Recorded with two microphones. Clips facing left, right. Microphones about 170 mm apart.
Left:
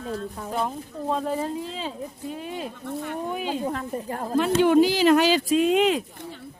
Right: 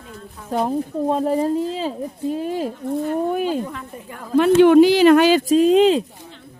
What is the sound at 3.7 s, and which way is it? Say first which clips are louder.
Speech: left 5 dB; 40° left (ahead or behind).